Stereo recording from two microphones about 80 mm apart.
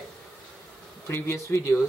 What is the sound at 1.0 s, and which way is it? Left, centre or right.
Speech, left.